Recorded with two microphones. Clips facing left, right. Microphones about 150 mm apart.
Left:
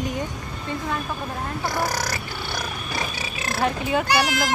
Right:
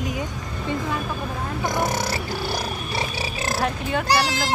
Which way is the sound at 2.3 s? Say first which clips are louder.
Right 4 dB; 35° right (ahead or behind).